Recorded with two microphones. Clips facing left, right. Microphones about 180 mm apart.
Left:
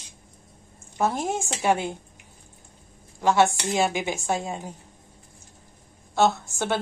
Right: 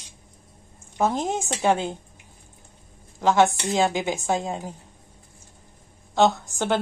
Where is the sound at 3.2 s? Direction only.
20° right (ahead or behind).